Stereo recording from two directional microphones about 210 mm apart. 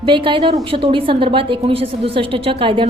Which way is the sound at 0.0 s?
25° right (ahead or behind).